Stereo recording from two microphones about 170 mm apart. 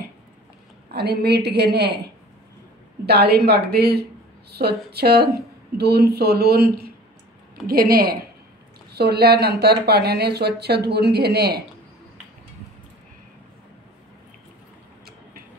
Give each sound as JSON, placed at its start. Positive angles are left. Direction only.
{"t": 0.9, "sound": "speech", "side_deg": -70}
{"t": 3.1, "sound": "a woman's voice", "side_deg": -70}